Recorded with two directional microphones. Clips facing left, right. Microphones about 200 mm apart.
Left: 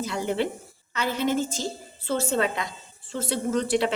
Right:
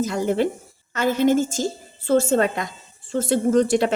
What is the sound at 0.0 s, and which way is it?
A woman's voice, 45° right (ahead or behind).